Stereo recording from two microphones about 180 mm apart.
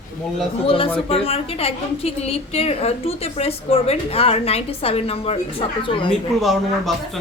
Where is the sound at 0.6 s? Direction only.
30° left (ahead or behind).